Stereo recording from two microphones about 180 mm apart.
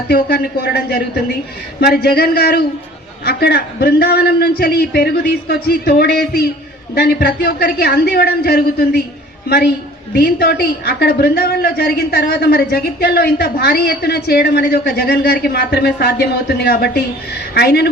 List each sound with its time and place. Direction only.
0.1 s a woman's voice: 55° left (ahead or behind)
10.2 s a woman's voice: 60° left (ahead or behind)